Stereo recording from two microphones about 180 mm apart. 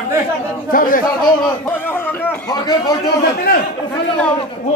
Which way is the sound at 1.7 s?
10° left (ahead or behind).